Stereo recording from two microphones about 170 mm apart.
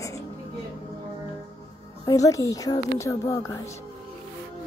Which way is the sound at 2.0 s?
20° left (ahead or behind).